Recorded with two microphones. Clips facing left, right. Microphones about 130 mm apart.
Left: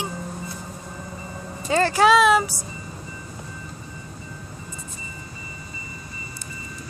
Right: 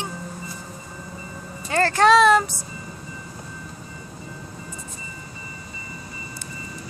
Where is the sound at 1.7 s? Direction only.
15° left (ahead or behind).